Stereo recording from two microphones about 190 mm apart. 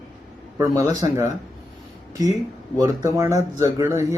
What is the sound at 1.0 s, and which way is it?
Speech, 25° right (ahead or behind).